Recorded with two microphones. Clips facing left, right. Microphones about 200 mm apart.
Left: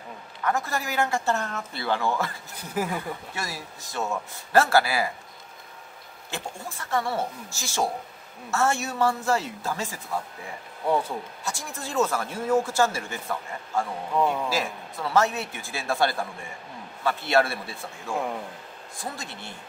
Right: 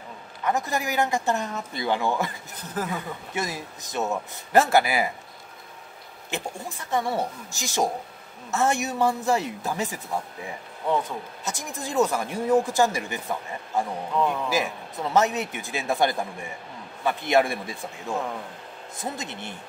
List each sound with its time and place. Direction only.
0.4 s speech: 20° right (ahead or behind)
2.5 s speech: 10° left (ahead or behind)
3.3 s a man's voice: 20° right (ahead or behind)
6.3 s speech: 15° right (ahead or behind)
10.9 s speech: 10° left (ahead or behind)
11.4 s speech: 20° right (ahead or behind)
14.1 s speech: 10° left (ahead or behind)
14.5 s a man's voice: 20° right (ahead or behind)